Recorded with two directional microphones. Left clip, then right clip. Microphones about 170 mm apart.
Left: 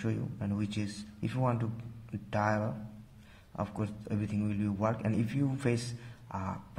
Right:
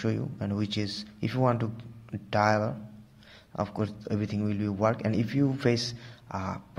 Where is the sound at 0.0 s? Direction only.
25° right (ahead or behind).